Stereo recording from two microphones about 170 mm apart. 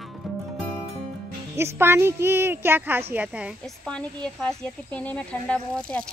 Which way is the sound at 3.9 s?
5° left (ahead or behind).